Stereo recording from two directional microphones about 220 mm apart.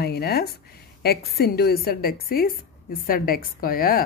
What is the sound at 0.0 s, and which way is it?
A woman's voice, 45° left (ahead or behind).